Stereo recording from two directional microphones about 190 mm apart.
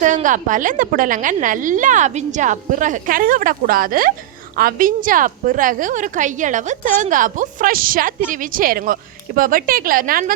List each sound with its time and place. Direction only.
0.0 s a woman's voice: 40° right (ahead or behind)